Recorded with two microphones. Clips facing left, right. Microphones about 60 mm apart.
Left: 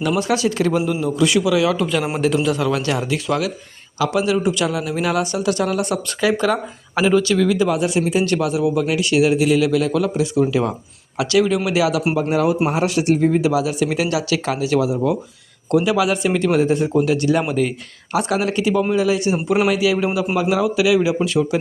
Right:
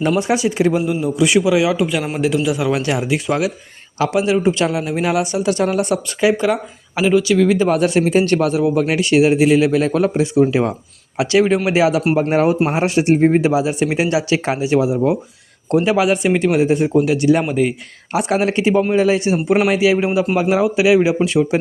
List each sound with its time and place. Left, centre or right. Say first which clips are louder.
0.2 s a man's voice: right 2 dB; right
6.4 s speech: right 1 dB; centre
7.4 s a man's voice: right 2 dB; right
7.7 s a man's voice: right 4 dB; right
13.5 s a man's voice: right 2 dB; right